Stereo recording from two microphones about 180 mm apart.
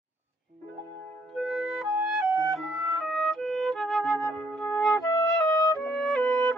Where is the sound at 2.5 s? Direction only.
Centre (ahead or behind).